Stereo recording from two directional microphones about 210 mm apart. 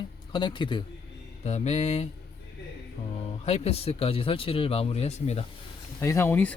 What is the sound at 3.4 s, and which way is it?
Speech, 30° left (ahead or behind).